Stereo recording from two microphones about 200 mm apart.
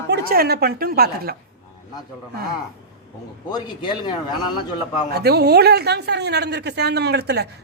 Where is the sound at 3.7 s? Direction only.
25° left (ahead or behind).